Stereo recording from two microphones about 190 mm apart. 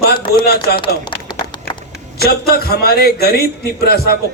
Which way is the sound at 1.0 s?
25° left (ahead or behind).